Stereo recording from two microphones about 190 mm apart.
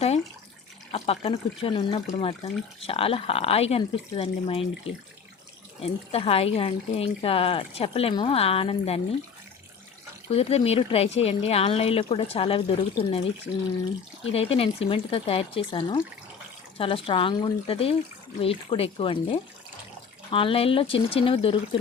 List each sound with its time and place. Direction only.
0.9 s speech: 30° left (ahead or behind)
4.9 s speech: 90° left
5.8 s speech: 30° left (ahead or behind)
10.2 s speech: 30° left (ahead or behind)
14.3 s speech: 30° left (ahead or behind)